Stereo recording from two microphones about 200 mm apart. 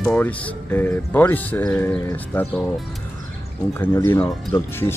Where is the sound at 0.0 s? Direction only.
10° left (ahead or behind).